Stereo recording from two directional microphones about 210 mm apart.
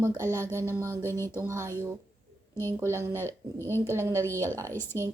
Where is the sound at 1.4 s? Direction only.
15° right (ahead or behind).